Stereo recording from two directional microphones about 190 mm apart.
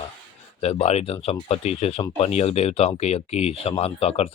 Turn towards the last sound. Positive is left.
turn(degrees=30)  # may be behind; listen again after turning